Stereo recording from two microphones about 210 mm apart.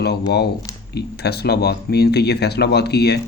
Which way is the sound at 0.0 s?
50° left (ahead or behind).